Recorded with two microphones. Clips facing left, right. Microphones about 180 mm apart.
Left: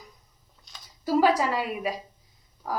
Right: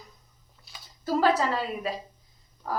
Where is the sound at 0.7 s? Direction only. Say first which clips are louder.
Right 1 dB; 5° right (ahead or behind).